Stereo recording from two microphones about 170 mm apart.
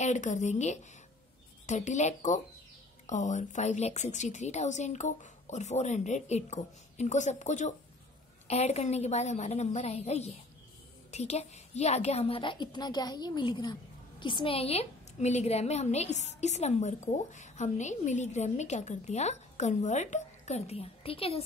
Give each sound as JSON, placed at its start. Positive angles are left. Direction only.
{"t": 0.0, "sound": "a woman's voice", "side_deg": 45}